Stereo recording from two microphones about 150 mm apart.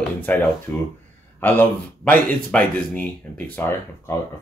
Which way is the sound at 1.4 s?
15° left (ahead or behind).